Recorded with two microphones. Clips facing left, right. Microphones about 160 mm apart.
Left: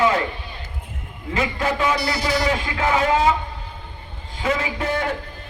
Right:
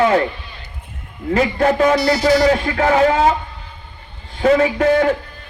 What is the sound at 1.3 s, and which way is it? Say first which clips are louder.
A man's voice: right 8 dB; 45° right (ahead or behind).